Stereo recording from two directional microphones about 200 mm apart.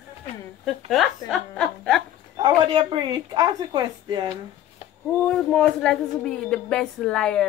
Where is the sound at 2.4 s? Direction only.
25° right (ahead or behind).